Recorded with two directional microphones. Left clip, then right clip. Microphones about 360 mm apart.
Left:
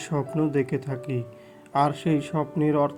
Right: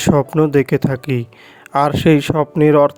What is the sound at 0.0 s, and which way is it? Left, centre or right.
Speech, right.